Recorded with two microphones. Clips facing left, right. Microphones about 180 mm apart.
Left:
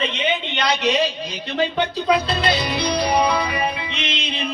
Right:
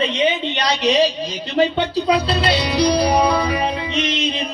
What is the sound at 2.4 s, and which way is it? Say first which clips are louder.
Music: right 4 dB; 35° right (ahead or behind).